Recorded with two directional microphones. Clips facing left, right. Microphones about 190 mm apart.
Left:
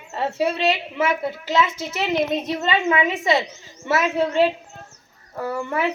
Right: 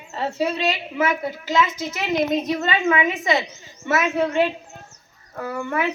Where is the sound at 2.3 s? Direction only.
25° left (ahead or behind).